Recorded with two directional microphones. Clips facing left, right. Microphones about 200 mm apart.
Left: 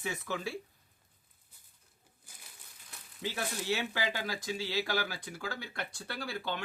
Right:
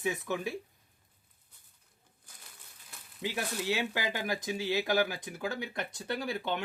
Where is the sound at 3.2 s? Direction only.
15° right (ahead or behind).